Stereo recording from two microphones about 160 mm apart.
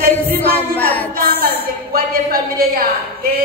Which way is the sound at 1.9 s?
65° right (ahead or behind).